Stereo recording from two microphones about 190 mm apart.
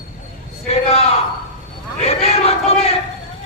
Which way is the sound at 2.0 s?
30° left (ahead or behind).